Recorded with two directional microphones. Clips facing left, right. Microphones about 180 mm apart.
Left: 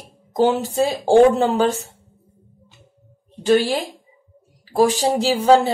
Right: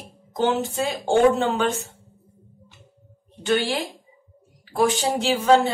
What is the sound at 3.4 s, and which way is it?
A woman's voice, 35° left (ahead or behind).